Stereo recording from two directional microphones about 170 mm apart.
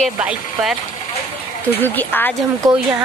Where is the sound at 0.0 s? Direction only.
5° right (ahead or behind).